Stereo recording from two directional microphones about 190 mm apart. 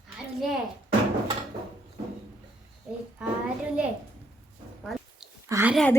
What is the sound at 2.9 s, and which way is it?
Child singing, 5° right (ahead or behind).